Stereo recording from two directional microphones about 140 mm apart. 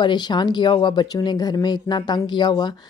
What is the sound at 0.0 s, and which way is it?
A woman's voice, 30° left (ahead or behind).